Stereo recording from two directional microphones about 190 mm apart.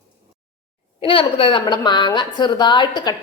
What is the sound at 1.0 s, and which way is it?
A woman's voice, 30° left (ahead or behind).